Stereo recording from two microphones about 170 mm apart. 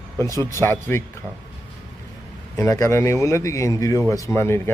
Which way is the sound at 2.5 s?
20° left (ahead or behind).